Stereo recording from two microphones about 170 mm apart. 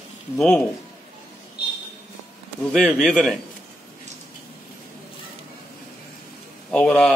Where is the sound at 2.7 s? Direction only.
5° left (ahead or behind).